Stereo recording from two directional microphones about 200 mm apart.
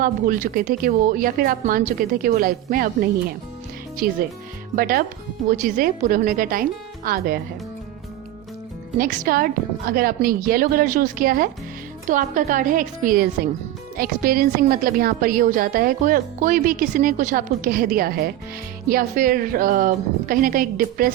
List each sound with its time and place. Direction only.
0.0 s a woman's voice: 45° right (ahead or behind)
3.9 s a woman's voice: 45° right (ahead or behind)
9.0 s a woman's voice: 45° right (ahead or behind)